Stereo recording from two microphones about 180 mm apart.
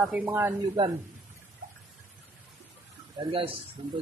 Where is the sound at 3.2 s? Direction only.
30° right (ahead or behind).